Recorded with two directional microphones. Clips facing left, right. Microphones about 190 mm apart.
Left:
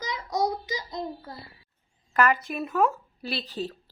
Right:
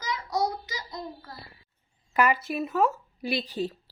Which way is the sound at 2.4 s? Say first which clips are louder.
Even; 5° right (ahead or behind).